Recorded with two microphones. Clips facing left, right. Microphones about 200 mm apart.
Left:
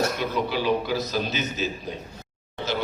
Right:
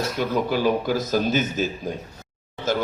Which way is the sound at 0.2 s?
45° right (ahead or behind).